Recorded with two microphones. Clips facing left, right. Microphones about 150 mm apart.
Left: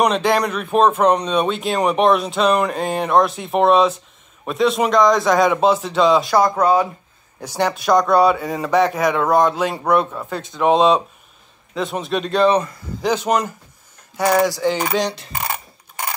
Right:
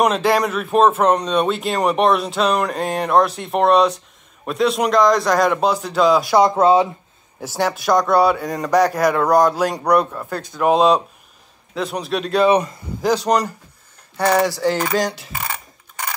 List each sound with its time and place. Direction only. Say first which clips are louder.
0.0 s speech: even; centre (ahead or behind)
6.3 s speech: right 2 dB; 25° right (ahead or behind)
7.3 s speech: even; 5° right (ahead or behind)